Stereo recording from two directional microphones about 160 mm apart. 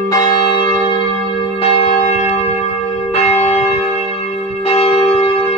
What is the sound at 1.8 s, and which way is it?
Church bell, 40° left (ahead or behind).